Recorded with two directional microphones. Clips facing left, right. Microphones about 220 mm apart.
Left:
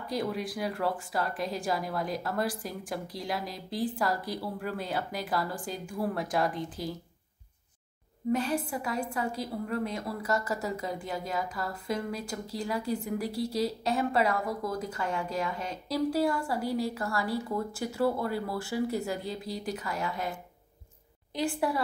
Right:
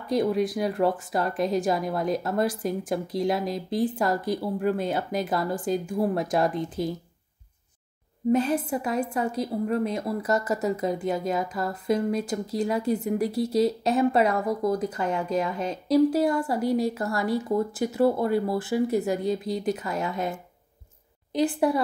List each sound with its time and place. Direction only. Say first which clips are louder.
0.1 s a woman's voice: right 9 dB; 20° right (ahead or behind)
8.3 s a woman's voice: right 6 dB; 20° right (ahead or behind)